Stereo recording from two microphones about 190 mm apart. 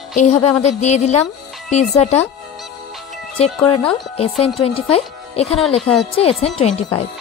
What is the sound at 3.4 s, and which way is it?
Speech, 30° left (ahead or behind).